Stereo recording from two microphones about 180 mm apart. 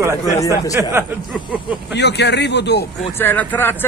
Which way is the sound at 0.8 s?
10° right (ahead or behind).